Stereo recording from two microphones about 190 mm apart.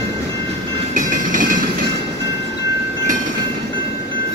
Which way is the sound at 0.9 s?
45° right (ahead or behind).